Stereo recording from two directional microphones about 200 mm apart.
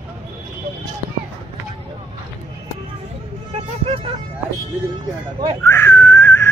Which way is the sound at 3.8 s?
30° right (ahead or behind).